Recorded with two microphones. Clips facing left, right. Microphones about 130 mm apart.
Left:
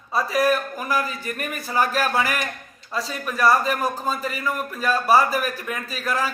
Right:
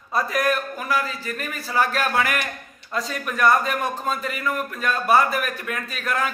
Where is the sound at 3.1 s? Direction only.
Centre (ahead or behind).